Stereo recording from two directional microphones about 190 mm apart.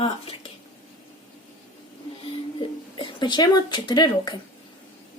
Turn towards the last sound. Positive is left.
turn(degrees=25)  # may be behind; listen again after turning